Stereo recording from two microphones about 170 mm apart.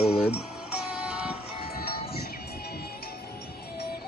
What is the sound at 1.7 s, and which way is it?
Music, 65° left (ahead or behind).